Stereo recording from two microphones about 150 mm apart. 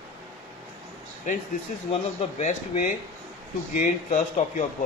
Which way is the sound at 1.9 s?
50° left (ahead or behind).